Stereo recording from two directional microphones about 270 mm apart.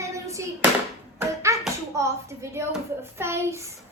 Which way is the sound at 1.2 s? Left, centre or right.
Centre.